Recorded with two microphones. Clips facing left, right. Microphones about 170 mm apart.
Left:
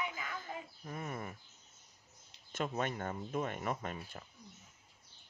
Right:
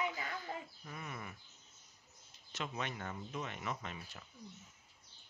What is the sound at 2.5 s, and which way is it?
Speech, 45° left (ahead or behind).